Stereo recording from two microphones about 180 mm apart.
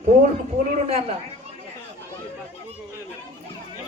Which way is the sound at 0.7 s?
35° right (ahead or behind).